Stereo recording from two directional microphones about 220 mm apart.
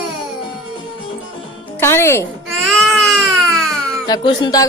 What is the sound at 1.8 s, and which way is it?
Speech, 10° left (ahead or behind).